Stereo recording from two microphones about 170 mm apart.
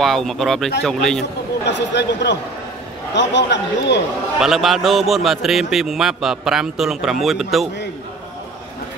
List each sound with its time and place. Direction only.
0.0 s a man's voice: centre (ahead or behind)
1.7 s a man's voice: 90° left
4.4 s a man's voice: centre (ahead or behind)